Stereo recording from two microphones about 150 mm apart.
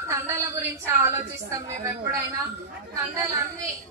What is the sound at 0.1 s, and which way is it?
A woman's voice, 15° right (ahead or behind).